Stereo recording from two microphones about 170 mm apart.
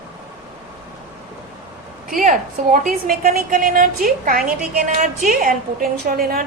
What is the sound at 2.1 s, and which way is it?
A woman's voice, 50° right (ahead or behind).